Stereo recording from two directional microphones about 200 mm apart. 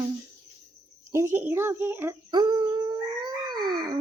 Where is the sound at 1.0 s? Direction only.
15° right (ahead or behind).